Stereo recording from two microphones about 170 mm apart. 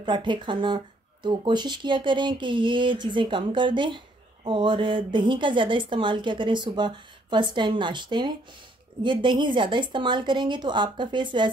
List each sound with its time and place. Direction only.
0.0 s speech: 25° right (ahead or behind)